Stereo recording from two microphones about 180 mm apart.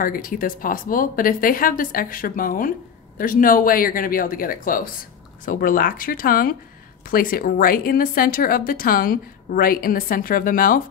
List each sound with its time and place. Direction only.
0.0 s a woman's voice: 50° left (ahead or behind)